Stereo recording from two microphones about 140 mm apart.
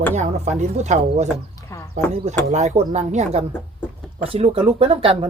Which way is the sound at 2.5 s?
55° right (ahead or behind).